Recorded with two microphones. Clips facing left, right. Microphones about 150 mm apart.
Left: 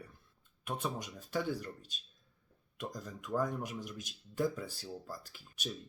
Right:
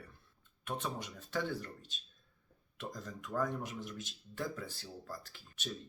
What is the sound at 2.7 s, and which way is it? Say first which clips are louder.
Speech: left 1 dB; 10° left (ahead or behind).